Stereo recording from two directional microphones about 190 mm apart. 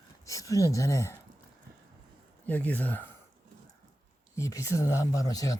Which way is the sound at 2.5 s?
10° left (ahead or behind).